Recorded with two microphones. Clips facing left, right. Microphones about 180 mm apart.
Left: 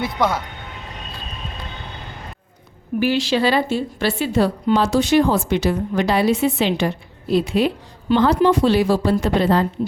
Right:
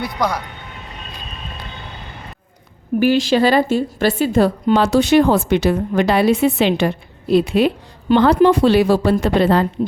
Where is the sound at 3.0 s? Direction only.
50° right (ahead or behind).